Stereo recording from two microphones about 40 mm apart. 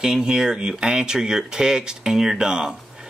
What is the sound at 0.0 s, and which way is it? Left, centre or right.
Speech, centre.